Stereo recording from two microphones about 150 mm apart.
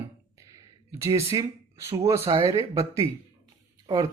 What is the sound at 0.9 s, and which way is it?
Speech, 20° right (ahead or behind).